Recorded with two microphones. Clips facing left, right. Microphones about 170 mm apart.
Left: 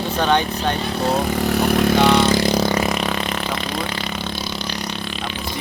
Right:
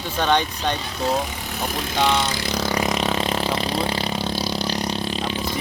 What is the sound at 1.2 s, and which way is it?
Speech, 65° left (ahead or behind).